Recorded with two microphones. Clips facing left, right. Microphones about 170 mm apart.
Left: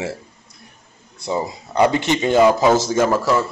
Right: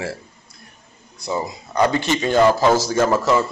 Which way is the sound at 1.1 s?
30° left (ahead or behind).